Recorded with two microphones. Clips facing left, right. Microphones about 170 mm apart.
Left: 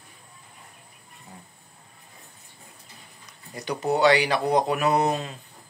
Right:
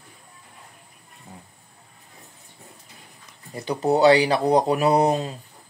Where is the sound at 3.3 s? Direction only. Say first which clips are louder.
Right 3 dB; 30° right (ahead or behind).